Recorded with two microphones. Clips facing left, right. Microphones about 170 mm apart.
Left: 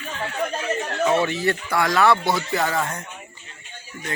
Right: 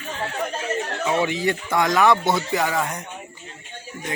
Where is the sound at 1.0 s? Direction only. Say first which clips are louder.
Left 2 dB; 15° right (ahead or behind).